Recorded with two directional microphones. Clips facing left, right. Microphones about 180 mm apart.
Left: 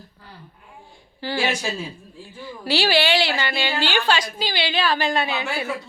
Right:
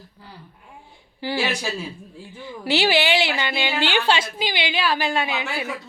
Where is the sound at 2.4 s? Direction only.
20° right (ahead or behind).